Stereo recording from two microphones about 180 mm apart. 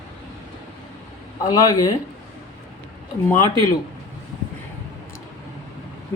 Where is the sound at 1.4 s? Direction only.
20° left (ahead or behind).